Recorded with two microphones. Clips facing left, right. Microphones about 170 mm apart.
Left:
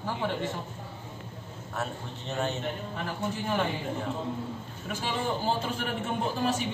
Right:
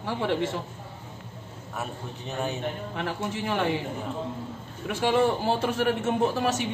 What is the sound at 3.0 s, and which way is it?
Speech, 85° right.